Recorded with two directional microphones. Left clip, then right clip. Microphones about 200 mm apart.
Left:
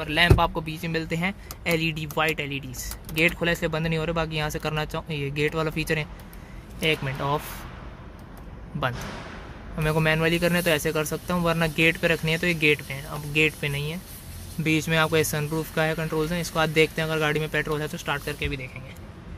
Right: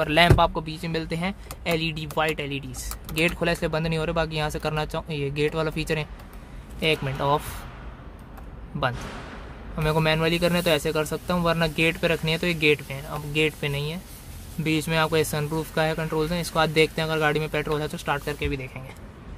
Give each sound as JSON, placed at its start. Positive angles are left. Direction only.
{"t": 0.0, "sound": "speech", "side_deg": -20}
{"t": 0.4, "sound": "speech", "side_deg": 5}
{"t": 9.8, "sound": "speech", "side_deg": 0}